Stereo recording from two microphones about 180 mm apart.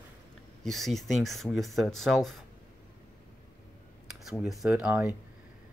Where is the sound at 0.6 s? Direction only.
Centre (ahead or behind).